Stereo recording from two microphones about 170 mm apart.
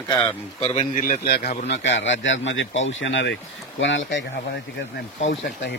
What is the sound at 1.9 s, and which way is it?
Speech, 90° left.